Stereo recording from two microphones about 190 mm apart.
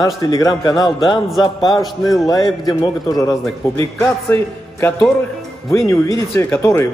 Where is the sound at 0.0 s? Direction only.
15° left (ahead or behind).